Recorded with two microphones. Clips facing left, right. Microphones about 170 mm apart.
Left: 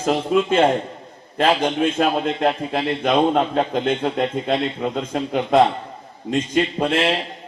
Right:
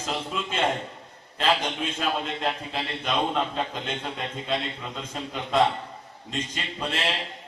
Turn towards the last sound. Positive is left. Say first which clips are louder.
# left 11 dB
turn(degrees=55)  # may be behind; listen again after turning